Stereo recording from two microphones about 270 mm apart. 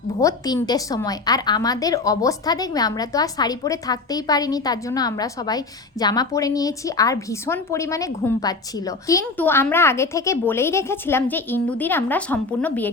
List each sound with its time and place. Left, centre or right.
0.2 s a woman's voice: centre